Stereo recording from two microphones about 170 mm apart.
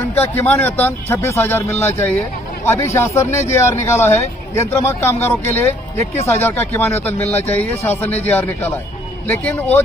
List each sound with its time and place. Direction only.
0.1 s a man's voice: 15° left (ahead or behind)
7.2 s speech: 40° left (ahead or behind)
7.9 s a man's voice: 10° left (ahead or behind)